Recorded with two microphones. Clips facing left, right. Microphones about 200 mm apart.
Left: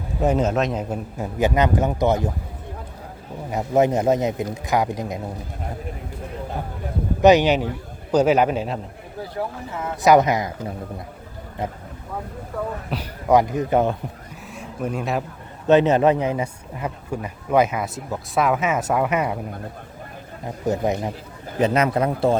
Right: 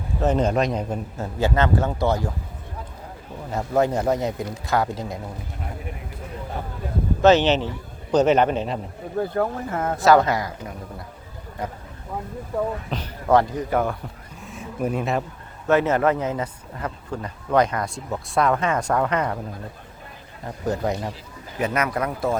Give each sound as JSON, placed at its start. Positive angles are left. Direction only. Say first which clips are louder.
{"t": 0.2, "sound": "speech", "louder": "left 1 dB", "side_deg": 10}
{"t": 3.5, "sound": "speech", "louder": "left 3 dB", "side_deg": 20}
{"t": 7.2, "sound": "speech", "louder": "left 2 dB", "side_deg": 15}
{"t": 9.2, "sound": "speech", "louder": "right 3 dB", "side_deg": -55}
{"t": 10.0, "sound": "speech", "louder": "left 2 dB", "side_deg": 20}
{"t": 12.9, "sound": "a man's voice", "louder": "left 2 dB", "side_deg": 10}
{"t": 14.4, "sound": "a sound", "louder": "right 2 dB", "side_deg": 0}
{"t": 15.6, "sound": "speech", "louder": "left 4 dB", "side_deg": 20}
{"t": 20.7, "sound": "speech", "louder": "left 3 dB", "side_deg": 20}